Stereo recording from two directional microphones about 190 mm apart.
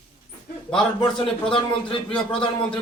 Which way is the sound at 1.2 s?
25° left (ahead or behind).